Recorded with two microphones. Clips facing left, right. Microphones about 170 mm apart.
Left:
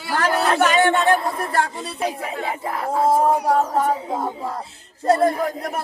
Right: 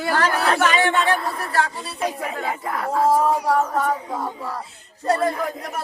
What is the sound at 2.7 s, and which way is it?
Music, 25° left (ahead or behind).